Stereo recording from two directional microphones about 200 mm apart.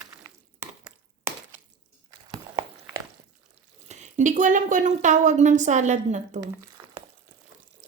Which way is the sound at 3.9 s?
35° right (ahead or behind).